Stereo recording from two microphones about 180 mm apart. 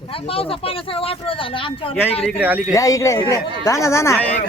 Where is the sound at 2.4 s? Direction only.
10° right (ahead or behind).